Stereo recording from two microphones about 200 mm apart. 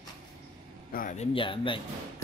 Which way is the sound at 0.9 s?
40° left (ahead or behind).